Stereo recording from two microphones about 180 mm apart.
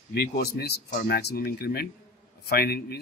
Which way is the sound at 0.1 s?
60° left (ahead or behind).